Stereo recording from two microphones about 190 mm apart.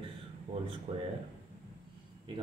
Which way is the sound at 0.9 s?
35° right (ahead or behind).